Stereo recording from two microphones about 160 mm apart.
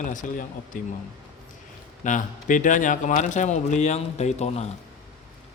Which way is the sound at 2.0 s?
55° left (ahead or behind).